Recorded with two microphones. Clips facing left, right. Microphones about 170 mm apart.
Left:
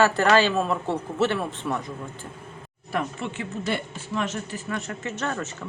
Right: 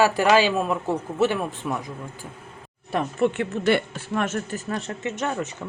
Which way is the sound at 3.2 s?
60° right (ahead or behind).